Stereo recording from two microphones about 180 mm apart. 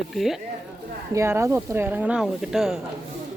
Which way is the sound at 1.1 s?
15° right (ahead or behind).